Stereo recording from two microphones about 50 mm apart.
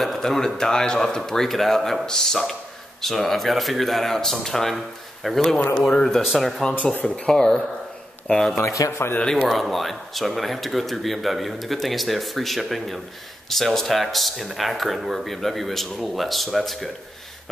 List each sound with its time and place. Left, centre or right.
0.0 s a man's voice: centre
6.7 s speech: left
7.2 s a man's voice: centre
8.5 s speech: left
9.2 s a man's voice: centre
9.5 s speech: centre